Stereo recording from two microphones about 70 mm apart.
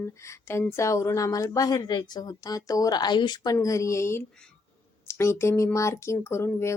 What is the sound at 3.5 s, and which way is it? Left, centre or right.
Speech, left.